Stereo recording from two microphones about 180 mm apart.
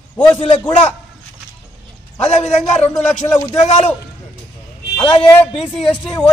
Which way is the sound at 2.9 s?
15° left (ahead or behind).